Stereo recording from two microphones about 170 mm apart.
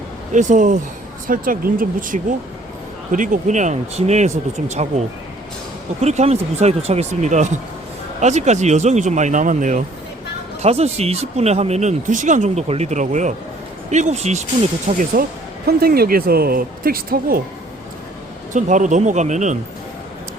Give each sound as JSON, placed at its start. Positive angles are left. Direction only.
{"t": 0.3, "sound": "speech", "side_deg": -50}
{"t": 14.8, "sound": "speech", "side_deg": -50}
{"t": 15.6, "sound": "speech", "side_deg": -65}
{"t": 18.5, "sound": "speech", "side_deg": -45}